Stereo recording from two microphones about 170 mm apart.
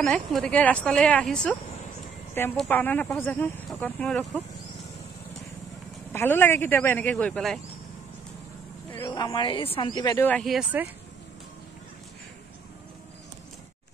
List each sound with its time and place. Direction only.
0.0 s a woman's voice: 5° left (ahead or behind)
6.1 s a woman's voice: 10° left (ahead or behind)
9.1 s speech: 25° left (ahead or behind)
10.4 s speech: 5° right (ahead or behind)